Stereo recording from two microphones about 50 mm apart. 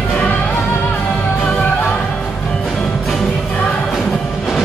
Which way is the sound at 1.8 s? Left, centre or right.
Centre.